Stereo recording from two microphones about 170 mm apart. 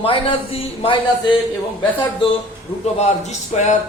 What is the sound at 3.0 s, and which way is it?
Speech, 40° left (ahead or behind).